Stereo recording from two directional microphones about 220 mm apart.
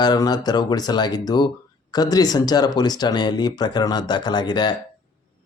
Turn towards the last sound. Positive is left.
turn(degrees=20)  # may be behind; listen again after turning